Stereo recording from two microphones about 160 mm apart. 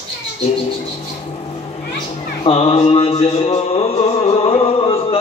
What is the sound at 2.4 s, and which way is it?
Mantra, 35° left (ahead or behind).